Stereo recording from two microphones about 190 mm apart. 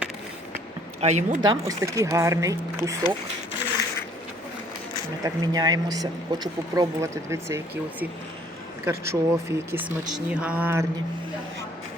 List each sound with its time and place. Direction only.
1.0 s speech: 40° right (ahead or behind)
1.4 s speech: 20° right (ahead or behind)
5.2 s speech: 20° right (ahead or behind)